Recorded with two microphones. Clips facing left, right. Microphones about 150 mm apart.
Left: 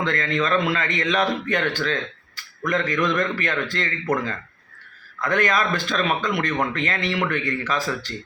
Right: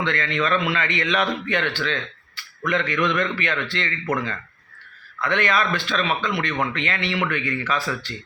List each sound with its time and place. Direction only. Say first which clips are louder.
0.0 s a man's voice: left 1 dB; 40° left (ahead or behind)